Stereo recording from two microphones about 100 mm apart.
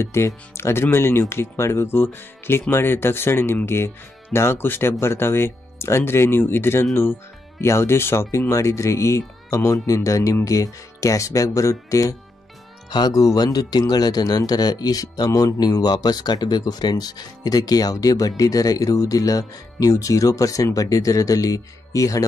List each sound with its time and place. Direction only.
0.0 s speech: 25° left (ahead or behind)